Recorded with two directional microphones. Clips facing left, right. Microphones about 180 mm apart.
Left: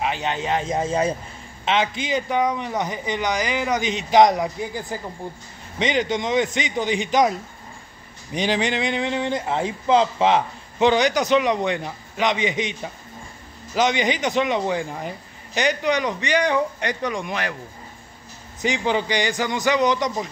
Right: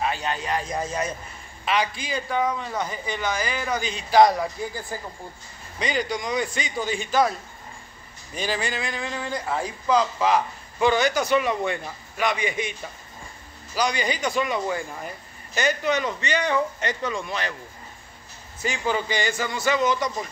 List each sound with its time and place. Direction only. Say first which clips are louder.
0.0 s speech: left 2 dB; 20° left (ahead or behind)
8.4 s speech: left 6 dB; 20° left (ahead or behind)
13.7 s speech: left 4 dB; 20° left (ahead or behind)
18.6 s speech: left 4 dB; 20° left (ahead or behind)